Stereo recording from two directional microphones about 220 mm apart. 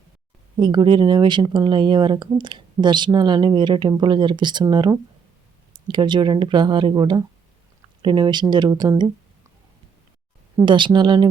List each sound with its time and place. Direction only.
0.5 s speech: 20° right (ahead or behind)
10.6 s speech: 20° right (ahead or behind)